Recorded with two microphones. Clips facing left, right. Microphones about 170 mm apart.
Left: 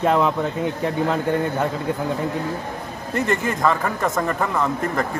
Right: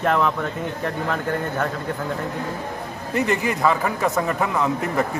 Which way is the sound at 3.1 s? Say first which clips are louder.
Even; centre (ahead or behind).